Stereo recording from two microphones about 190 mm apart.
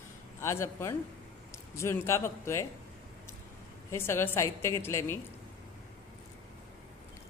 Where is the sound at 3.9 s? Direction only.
15° left (ahead or behind).